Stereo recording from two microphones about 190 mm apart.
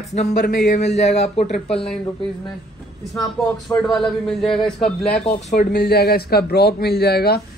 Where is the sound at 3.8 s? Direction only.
Centre (ahead or behind).